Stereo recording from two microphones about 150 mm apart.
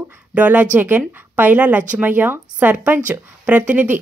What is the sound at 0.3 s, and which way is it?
Speech, 10° right (ahead or behind).